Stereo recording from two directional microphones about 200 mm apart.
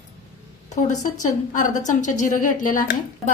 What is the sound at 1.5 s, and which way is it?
A woman's voice, 40° left (ahead or behind).